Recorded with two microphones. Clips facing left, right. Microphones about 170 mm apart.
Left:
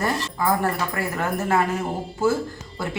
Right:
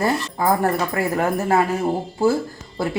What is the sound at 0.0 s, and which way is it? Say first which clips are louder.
Speech: right 3 dB; 40° right (ahead or behind).